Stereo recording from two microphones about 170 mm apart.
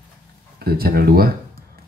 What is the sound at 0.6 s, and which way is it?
Speech, 65° right (ahead or behind).